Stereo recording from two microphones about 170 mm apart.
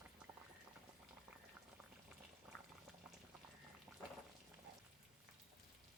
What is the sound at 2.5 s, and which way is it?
Boiling, 5° left (ahead or behind).